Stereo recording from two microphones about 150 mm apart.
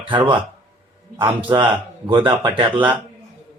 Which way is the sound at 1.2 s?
30° right (ahead or behind).